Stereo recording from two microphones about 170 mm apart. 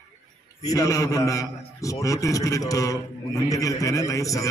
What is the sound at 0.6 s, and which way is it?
A man's voice, 20° left (ahead or behind).